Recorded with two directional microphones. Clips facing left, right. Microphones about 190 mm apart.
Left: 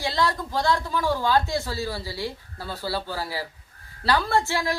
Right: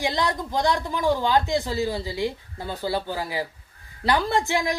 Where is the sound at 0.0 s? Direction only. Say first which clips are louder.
Even; 15° right (ahead or behind).